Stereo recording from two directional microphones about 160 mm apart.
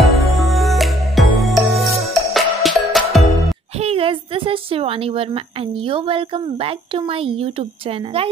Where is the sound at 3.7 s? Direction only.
35° right (ahead or behind).